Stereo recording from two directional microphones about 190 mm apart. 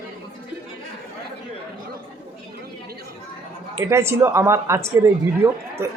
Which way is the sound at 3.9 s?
15° right (ahead or behind).